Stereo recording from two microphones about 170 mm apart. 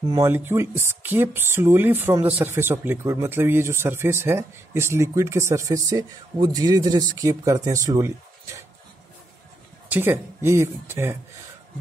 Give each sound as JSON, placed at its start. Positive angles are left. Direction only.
{"t": 0.1, "sound": "speech", "side_deg": -15}
{"t": 9.8, "sound": "a sound", "side_deg": -10}
{"t": 10.4, "sound": "speech", "side_deg": -15}